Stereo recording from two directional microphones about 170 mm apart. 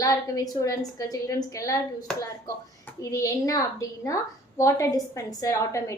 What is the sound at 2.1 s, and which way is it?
Speech, 5° left (ahead or behind).